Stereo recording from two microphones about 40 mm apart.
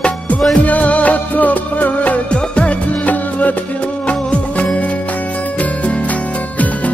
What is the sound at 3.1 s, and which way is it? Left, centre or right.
Music, left.